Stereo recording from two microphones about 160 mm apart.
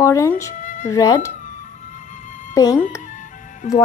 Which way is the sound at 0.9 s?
20° left (ahead or behind).